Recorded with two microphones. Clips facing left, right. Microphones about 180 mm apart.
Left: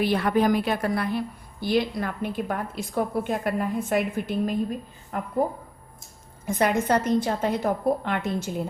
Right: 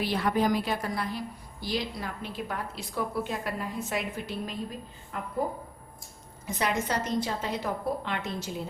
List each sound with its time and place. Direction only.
0.0 s a woman's voice: 55° left (ahead or behind)
6.4 s a woman's voice: 50° left (ahead or behind)